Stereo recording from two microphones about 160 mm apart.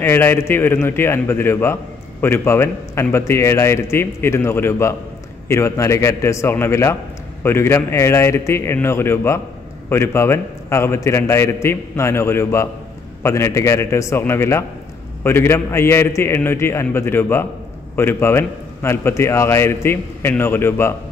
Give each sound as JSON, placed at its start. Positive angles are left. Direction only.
{"t": 0.0, "sound": "a man's voice", "side_deg": 15}